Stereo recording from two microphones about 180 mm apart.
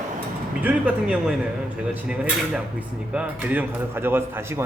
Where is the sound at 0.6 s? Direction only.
10° right (ahead or behind).